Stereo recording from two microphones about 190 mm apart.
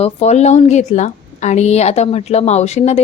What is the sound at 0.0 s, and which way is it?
A woman's voice, 35° left (ahead or behind).